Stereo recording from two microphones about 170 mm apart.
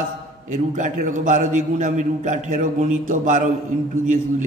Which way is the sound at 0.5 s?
50° right (ahead or behind).